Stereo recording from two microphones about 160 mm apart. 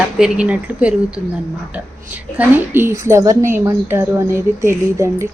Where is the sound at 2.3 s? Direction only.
10° right (ahead or behind).